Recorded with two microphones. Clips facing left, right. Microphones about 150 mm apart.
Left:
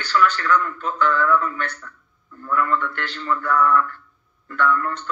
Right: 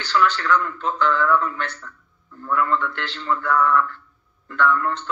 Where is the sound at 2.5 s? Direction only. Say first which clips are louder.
Even; 50° left (ahead or behind).